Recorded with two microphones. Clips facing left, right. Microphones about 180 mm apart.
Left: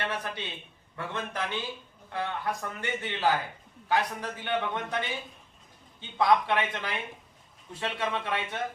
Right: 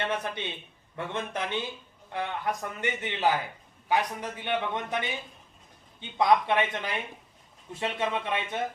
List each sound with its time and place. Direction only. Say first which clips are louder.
0.0 s a man's voice: right 3 dB; 20° right (ahead or behind)
6.1 s speech: right 1 dB; 20° right (ahead or behind)